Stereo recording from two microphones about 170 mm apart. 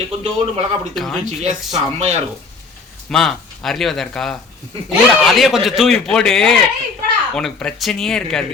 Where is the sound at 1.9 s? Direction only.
40° right (ahead or behind).